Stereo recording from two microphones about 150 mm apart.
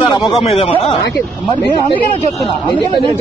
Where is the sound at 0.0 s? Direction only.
35° left (ahead or behind).